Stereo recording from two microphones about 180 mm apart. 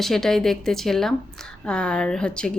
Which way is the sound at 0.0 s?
Centre (ahead or behind).